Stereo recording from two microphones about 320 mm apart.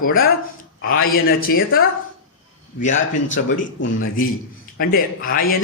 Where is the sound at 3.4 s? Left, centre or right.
Left.